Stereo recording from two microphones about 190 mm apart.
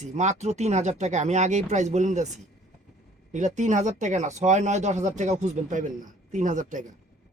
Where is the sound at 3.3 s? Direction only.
40° right (ahead or behind).